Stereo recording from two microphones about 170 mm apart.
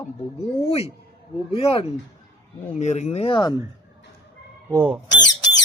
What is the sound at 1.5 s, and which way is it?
Speech, 35° left (ahead or behind).